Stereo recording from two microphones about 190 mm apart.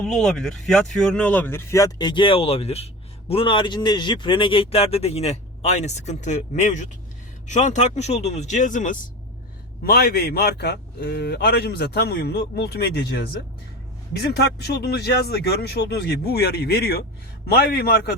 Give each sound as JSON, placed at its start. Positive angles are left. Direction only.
{"t": 0.0, "sound": "speech", "side_deg": 0}
{"t": 9.8, "sound": "a man's voice", "side_deg": 55}